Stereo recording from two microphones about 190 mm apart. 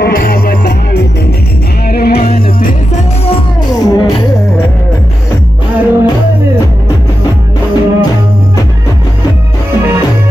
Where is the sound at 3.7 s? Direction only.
20° left (ahead or behind).